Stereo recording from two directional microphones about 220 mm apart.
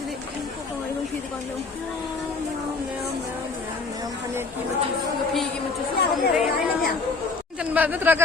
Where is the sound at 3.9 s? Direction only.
15° right (ahead or behind).